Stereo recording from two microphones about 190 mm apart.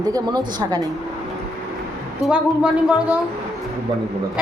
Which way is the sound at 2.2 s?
5° right (ahead or behind).